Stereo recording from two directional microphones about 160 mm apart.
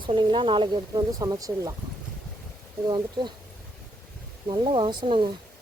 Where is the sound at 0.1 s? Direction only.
30° right (ahead or behind).